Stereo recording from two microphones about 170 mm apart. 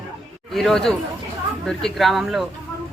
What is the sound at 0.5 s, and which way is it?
A man's voice, centre (ahead or behind).